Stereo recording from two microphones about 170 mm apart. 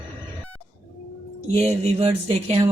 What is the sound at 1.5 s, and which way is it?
A woman's voice, 40° right (ahead or behind).